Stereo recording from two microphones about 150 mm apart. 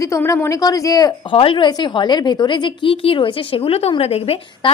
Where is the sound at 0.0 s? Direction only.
20° left (ahead or behind).